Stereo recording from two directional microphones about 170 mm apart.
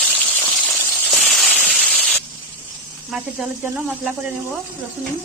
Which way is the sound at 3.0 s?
Centre (ahead or behind).